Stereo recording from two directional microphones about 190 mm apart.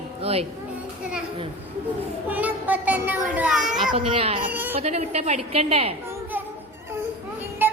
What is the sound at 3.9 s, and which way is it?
Speech, 30° right (ahead or behind).